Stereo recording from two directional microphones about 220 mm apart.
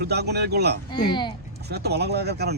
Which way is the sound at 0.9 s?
20° left (ahead or behind).